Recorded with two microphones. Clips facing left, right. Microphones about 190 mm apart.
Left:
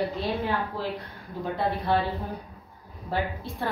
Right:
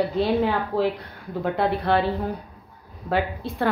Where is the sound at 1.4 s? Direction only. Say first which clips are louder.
Right 5 dB; 75° right (ahead or behind).